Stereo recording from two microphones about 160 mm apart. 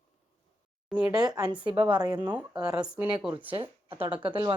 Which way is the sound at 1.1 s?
25° right (ahead or behind).